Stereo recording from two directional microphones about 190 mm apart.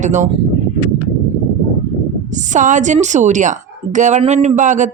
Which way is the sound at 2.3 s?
40° right (ahead or behind).